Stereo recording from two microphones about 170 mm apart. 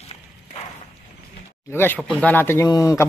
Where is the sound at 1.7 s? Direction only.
15° left (ahead or behind).